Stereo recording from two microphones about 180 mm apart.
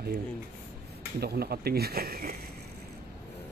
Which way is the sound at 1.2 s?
60° right (ahead or behind).